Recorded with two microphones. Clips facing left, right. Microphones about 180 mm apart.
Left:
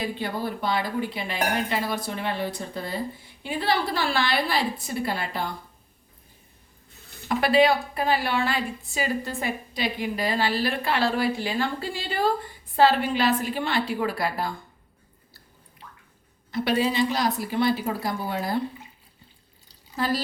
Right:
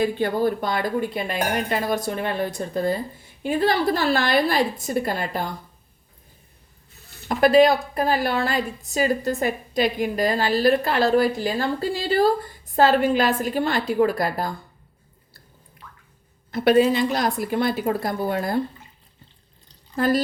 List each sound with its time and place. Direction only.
0.0 s a woman's voice: 50° right (ahead or behind)
7.3 s a woman's voice: 45° right (ahead or behind)
16.5 s a woman's voice: 50° right (ahead or behind)